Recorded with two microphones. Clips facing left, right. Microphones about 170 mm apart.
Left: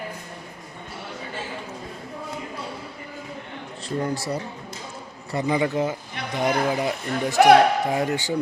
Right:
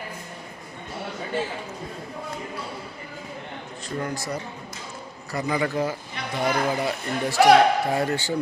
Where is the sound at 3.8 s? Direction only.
30° left (ahead or behind).